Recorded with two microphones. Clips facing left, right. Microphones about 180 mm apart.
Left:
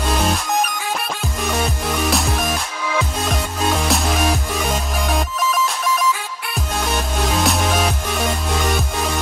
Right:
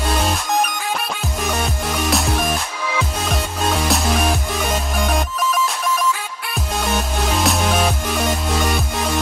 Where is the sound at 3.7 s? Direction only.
Centre (ahead or behind).